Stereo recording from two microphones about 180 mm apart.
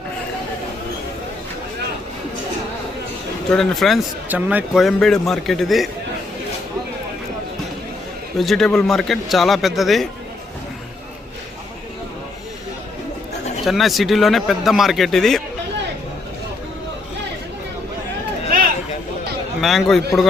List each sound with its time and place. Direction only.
3.5 s a man's voice: centre (ahead or behind)
8.4 s a man's voice: centre (ahead or behind)
13.7 s a man's voice: centre (ahead or behind)
19.6 s a man's voice: centre (ahead or behind)